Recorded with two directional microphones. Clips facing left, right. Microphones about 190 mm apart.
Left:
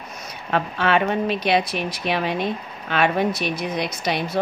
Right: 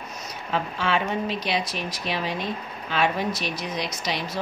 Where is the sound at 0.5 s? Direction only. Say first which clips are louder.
Left 5 dB; 60° left (ahead or behind).